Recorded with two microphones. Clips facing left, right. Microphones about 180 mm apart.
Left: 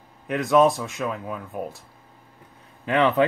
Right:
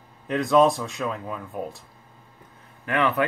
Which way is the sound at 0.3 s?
Centre (ahead or behind).